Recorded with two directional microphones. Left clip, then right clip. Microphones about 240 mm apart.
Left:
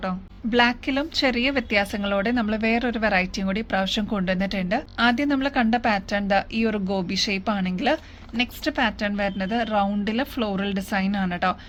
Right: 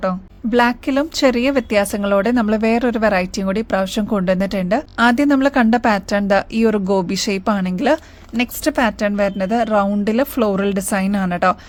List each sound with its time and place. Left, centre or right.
0.0 s a woman's voice: right